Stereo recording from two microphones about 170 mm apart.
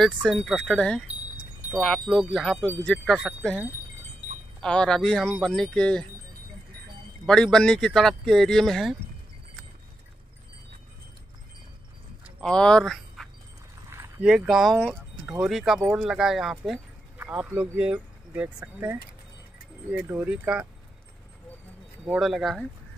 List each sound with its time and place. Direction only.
0.0 s speech: centre (ahead or behind)
7.2 s speech: 5° left (ahead or behind)
12.4 s speech: 5° left (ahead or behind)
13.8 s a sound: 15° right (ahead or behind)
14.2 s speech: 5° right (ahead or behind)
22.0 s speech: 5° right (ahead or behind)